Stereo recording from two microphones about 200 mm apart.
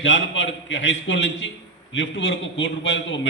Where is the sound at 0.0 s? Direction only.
70° left (ahead or behind).